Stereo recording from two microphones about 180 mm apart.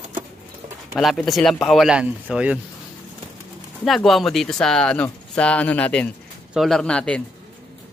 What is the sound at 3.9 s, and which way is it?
Speech, centre (ahead or behind).